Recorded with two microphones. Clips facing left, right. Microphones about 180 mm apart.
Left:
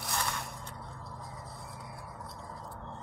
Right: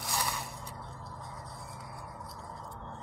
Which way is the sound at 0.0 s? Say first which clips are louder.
Even; 5° right (ahead or behind).